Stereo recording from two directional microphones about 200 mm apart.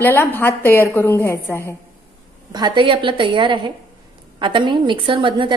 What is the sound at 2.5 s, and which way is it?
A woman's voice, 20° right (ahead or behind).